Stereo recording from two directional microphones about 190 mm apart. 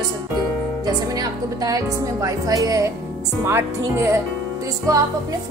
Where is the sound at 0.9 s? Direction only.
20° right (ahead or behind).